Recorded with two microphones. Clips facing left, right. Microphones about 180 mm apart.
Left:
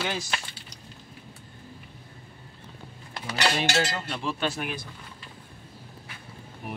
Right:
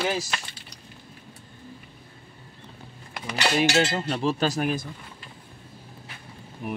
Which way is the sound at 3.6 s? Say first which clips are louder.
Right 5 dB; 20° right (ahead or behind).